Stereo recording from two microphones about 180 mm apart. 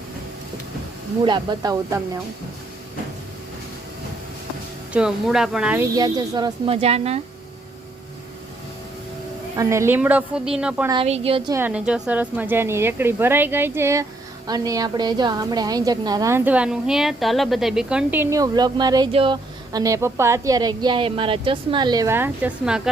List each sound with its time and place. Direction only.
1.2 s a woman's voice: 25° right (ahead or behind)
4.9 s speech: 5° right (ahead or behind)
6.0 s a woman's voice: 20° right (ahead or behind)
6.7 s a woman's voice: 35° right (ahead or behind)
9.6 s a woman's voice: 15° right (ahead or behind)
11.0 s a woman's voice: 35° right (ahead or behind)
11.5 s a woman's voice: 10° right (ahead or behind)